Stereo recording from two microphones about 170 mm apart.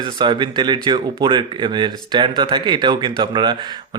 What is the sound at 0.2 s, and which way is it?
Speech, 30° right (ahead or behind).